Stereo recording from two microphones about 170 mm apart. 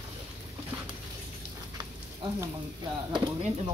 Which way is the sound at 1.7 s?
25° right (ahead or behind).